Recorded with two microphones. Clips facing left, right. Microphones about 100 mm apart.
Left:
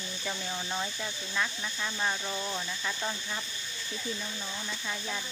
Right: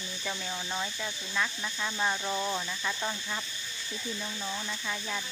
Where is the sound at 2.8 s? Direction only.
5° right (ahead or behind).